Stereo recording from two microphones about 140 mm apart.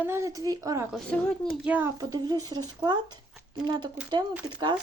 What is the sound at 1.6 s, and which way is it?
Speech, 10° right (ahead or behind).